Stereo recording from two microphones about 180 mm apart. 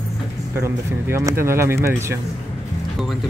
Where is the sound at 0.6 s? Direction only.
15° right (ahead or behind).